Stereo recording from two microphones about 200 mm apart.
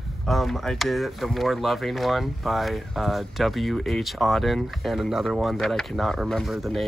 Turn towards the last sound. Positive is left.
turn(degrees=0)  # may be behind; listen again after turning